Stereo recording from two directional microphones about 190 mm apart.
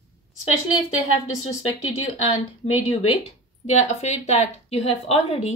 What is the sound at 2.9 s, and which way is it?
A woman's voice, 30° left (ahead or behind).